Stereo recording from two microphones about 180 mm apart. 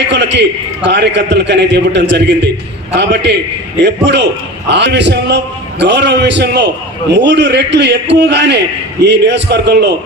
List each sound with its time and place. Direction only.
0.1 s a man's voice: 75° right (ahead or behind)